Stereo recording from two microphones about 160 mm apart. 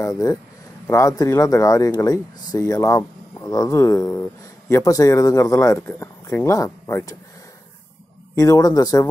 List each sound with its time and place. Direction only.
0.0 s speech: 20° left (ahead or behind)
8.4 s speech: 20° left (ahead or behind)